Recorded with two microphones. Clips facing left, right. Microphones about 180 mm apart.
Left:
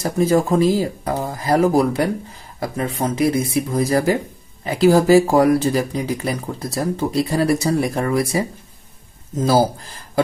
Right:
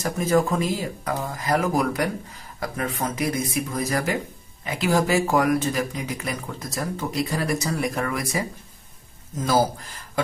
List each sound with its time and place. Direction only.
0.0 s speech: 30° left (ahead or behind)